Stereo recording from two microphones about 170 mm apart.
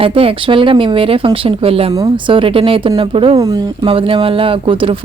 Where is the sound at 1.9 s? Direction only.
20° right (ahead or behind).